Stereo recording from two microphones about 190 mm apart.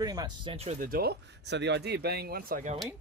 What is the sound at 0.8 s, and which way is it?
Speech, 55° right (ahead or behind).